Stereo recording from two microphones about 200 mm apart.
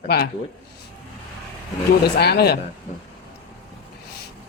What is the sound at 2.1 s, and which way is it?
Speech, 55° left (ahead or behind).